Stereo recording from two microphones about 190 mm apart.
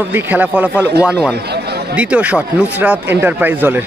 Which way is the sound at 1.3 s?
60° right (ahead or behind).